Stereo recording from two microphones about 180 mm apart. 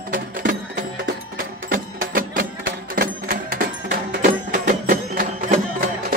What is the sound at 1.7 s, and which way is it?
Music, 50° right (ahead or behind).